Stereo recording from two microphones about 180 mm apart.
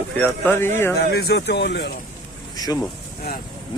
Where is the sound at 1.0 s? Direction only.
65° left (ahead or behind).